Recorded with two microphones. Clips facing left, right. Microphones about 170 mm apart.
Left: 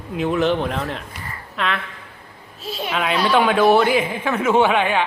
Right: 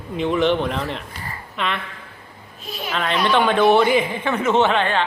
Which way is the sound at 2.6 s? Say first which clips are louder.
Left 4 dB; 25° left (ahead or behind).